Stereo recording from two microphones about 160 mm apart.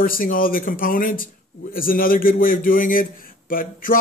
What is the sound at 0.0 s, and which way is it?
A man's voice, 60° left (ahead or behind).